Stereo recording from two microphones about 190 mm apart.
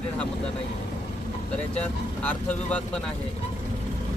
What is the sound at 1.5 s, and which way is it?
Speech, 5° left (ahead or behind).